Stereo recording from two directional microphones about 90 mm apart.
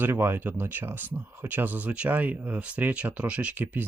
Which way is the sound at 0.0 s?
25° right (ahead or behind).